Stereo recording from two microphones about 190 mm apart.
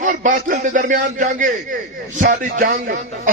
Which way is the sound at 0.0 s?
40° right (ahead or behind).